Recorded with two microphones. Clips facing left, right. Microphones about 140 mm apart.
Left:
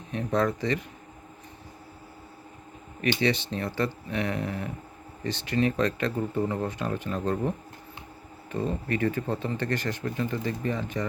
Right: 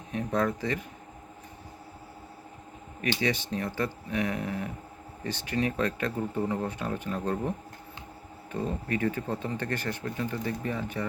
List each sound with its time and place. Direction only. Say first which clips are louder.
0.1 s speech: left 2 dB; 10° right (ahead or behind)
3.2 s speech: left 3 dB; 10° right (ahead or behind)
8.5 s speech: left 2 dB; 10° right (ahead or behind)